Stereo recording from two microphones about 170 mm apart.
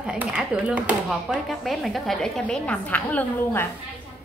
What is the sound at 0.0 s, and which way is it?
A woman's voice, 5° right (ahead or behind).